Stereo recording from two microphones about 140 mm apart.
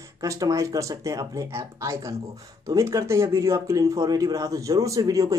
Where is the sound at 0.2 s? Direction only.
25° right (ahead or behind).